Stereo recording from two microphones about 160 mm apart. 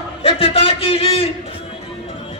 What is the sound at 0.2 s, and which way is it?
A man's voice, 35° left (ahead or behind).